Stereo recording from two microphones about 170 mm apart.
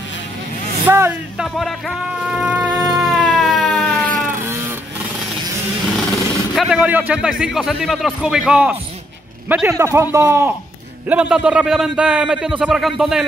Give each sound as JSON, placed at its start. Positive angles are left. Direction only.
{"t": 0.8, "sound": "vehicle", "side_deg": -15}
{"t": 1.4, "sound": "music", "side_deg": 0}
{"t": 3.0, "sound": "emergency vehicle", "side_deg": 0}
{"t": 5.9, "sound": "a sound", "side_deg": 5}
{"t": 6.5, "sound": "a man's voice", "side_deg": -5}
{"t": 11.1, "sound": "a man's voice", "side_deg": -5}